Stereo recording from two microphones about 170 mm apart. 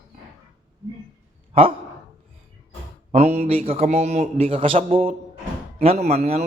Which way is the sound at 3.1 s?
40° right (ahead or behind).